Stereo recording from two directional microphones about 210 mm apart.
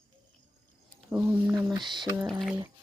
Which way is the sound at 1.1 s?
5° right (ahead or behind).